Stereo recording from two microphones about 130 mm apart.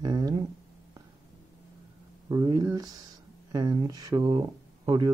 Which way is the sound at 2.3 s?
30° right (ahead or behind).